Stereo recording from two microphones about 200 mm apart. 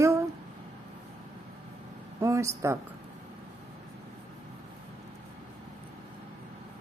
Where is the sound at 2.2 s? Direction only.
15° right (ahead or behind).